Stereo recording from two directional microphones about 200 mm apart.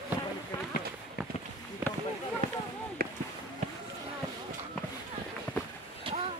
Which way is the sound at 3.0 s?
50° right (ahead or behind).